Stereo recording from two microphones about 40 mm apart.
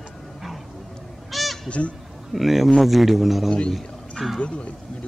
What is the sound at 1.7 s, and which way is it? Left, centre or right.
Speech, left.